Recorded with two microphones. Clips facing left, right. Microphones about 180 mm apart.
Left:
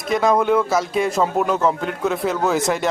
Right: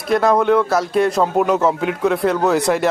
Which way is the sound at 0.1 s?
Centre (ahead or behind).